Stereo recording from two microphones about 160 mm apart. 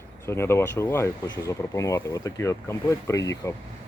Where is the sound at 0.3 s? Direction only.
15° left (ahead or behind).